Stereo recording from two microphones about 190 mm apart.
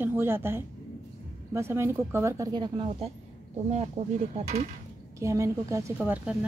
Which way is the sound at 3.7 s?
35° right (ahead or behind).